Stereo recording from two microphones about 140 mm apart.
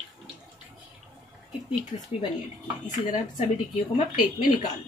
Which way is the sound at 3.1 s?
65° left (ahead or behind).